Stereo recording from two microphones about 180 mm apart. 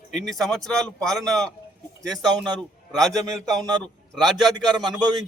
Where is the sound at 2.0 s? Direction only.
20° right (ahead or behind).